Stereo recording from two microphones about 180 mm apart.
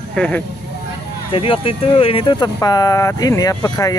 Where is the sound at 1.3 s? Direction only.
30° left (ahead or behind).